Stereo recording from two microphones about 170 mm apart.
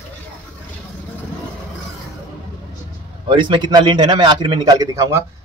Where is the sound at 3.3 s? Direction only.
25° right (ahead or behind).